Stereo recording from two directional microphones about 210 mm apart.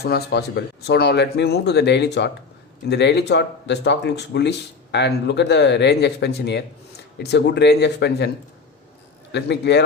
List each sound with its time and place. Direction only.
0.0 s speech: 50° left (ahead or behind)
9.3 s speech: 55° left (ahead or behind)